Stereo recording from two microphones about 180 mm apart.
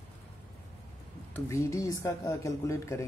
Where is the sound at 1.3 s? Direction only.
15° left (ahead or behind).